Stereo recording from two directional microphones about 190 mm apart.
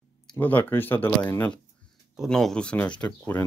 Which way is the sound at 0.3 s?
10° left (ahead or behind).